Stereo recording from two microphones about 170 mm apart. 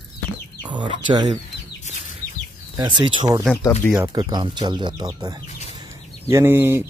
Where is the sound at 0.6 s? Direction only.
25° right (ahead or behind).